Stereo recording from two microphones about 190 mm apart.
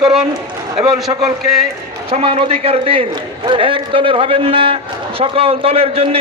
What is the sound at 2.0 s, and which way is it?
A man's voice, 30° right (ahead or behind).